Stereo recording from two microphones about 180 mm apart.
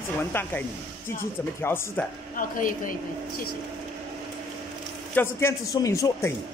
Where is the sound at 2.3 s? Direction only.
50° left (ahead or behind).